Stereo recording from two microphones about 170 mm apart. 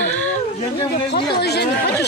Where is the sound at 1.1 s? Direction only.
75° left (ahead or behind).